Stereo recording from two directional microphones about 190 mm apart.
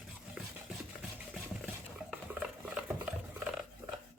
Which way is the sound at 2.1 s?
10° right (ahead or behind).